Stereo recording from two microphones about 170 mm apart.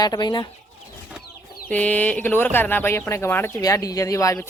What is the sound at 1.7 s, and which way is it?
Speech, 10° left (ahead or behind).